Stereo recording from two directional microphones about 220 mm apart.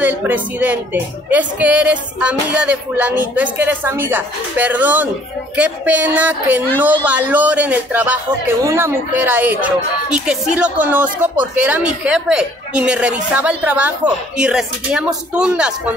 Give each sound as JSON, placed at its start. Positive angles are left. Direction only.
{"t": 0.0, "sound": "speech", "side_deg": -5}